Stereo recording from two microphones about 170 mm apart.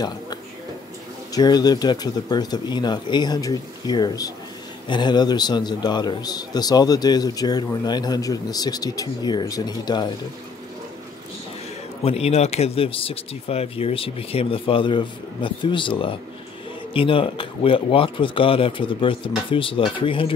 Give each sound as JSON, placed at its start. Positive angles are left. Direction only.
{"t": 1.3, "sound": "a man's voice", "side_deg": 25}
{"t": 12.0, "sound": "speech", "side_deg": 35}